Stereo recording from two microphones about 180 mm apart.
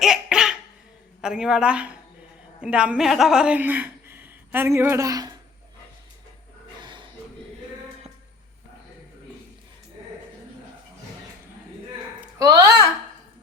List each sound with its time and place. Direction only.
0.0 s a sound: 5° right (ahead or behind)
1.2 s a woman's voice: 5° right (ahead or behind); by 5.3 s 20° right (ahead or behind)
12.4 s speech: 20° right (ahead or behind)